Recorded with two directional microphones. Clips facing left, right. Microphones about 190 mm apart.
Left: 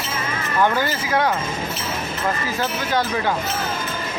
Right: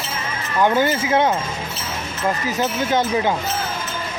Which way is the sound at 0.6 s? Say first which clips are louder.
Right 3 dB; 20° right (ahead or behind).